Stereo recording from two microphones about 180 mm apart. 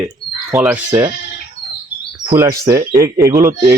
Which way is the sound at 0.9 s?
20° right (ahead or behind).